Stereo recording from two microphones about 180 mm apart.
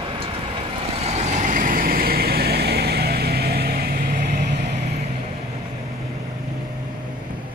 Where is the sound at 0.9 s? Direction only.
35° right (ahead or behind); by 4.4 s 60° right (ahead or behind).